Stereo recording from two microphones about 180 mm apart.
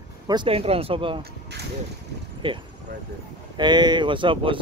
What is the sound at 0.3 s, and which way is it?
Speech, 30° right (ahead or behind).